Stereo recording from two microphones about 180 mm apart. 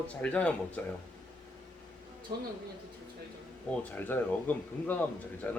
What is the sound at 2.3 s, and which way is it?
Speech, 55° right (ahead or behind).